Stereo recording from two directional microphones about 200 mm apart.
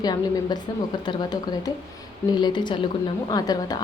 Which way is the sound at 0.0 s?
20° left (ahead or behind).